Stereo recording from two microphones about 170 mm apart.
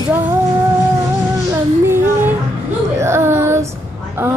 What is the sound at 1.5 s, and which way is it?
Child singing, 15° right (ahead or behind).